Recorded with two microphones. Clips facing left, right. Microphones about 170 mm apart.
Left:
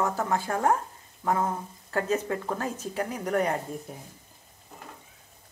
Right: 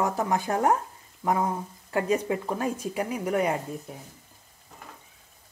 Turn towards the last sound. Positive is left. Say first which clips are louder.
# right 1 dB
turn(degrees=-10)  # may be behind; listen again after turning